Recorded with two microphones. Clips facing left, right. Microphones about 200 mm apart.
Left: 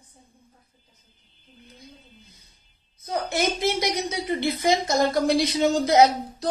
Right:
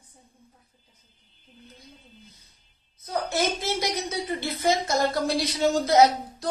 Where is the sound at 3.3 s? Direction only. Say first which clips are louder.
Left 3 dB; 15° left (ahead or behind).